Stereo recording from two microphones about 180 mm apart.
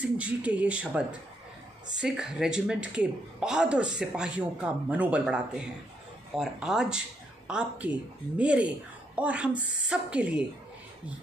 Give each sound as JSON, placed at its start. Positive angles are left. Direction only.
{"t": 0.2, "sound": "a woman's voice", "side_deg": -5}